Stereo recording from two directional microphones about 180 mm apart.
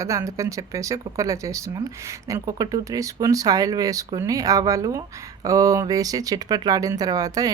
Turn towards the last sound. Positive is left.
turn(degrees=-20)  # may be behind; listen again after turning